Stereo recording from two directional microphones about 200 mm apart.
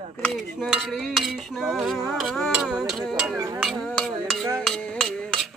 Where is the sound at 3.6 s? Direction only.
Centre (ahead or behind).